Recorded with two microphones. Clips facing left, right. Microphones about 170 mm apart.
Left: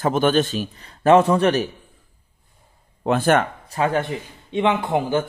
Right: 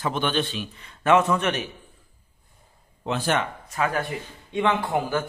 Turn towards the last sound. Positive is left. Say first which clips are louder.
# left 4 dB
turn(degrees=20)  # may be behind; listen again after turning